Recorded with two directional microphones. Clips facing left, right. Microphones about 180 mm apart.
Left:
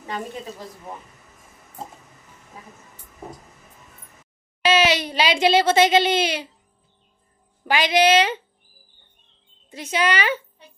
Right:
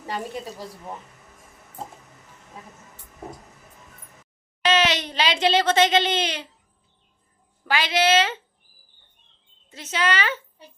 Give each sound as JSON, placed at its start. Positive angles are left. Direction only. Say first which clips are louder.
{"t": 4.6, "sound": "speech", "louder": "left 3 dB", "side_deg": 10}
{"t": 7.6, "sound": "speech", "louder": "left 4 dB", "side_deg": 15}
{"t": 9.6, "sound": "speech", "louder": "left 3 dB", "side_deg": 15}